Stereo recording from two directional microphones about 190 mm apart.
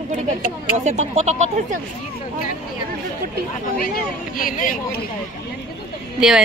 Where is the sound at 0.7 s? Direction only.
40° right (ahead or behind).